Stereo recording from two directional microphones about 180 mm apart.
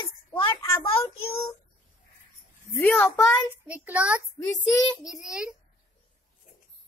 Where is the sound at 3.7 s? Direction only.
5° right (ahead or behind).